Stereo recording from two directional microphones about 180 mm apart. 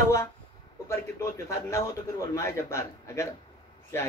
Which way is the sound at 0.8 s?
15° left (ahead or behind).